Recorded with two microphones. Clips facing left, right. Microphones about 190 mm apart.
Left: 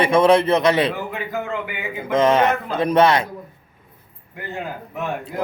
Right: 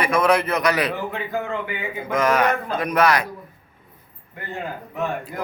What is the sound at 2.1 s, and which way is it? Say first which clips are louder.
Speech: left 3 dB; 25° left (ahead or behind).